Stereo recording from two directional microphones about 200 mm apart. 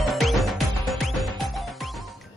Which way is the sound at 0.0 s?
Centre (ahead or behind).